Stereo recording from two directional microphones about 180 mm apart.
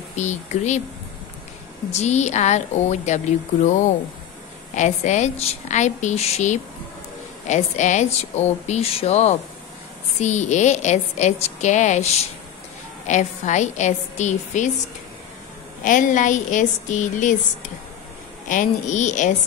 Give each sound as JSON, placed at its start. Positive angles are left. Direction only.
{"t": 0.1, "sound": "a woman's voice", "side_deg": 40}
{"t": 1.9, "sound": "a woman's voice", "side_deg": 40}
{"t": 15.8, "sound": "a woman's voice", "side_deg": 45}
{"t": 18.5, "sound": "a woman's voice", "side_deg": 45}